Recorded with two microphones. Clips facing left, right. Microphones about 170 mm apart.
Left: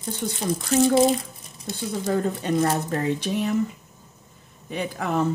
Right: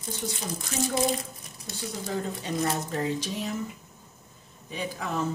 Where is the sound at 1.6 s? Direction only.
55° left (ahead or behind).